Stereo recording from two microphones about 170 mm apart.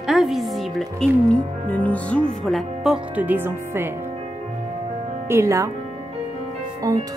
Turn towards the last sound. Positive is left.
turn(degrees=-20)  # may be behind; listen again after turning